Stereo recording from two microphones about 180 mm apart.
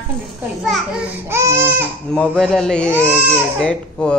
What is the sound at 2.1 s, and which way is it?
Speech, 5° left (ahead or behind).